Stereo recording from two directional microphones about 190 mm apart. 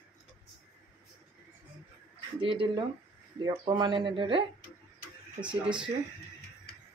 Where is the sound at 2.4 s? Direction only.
25° right (ahead or behind).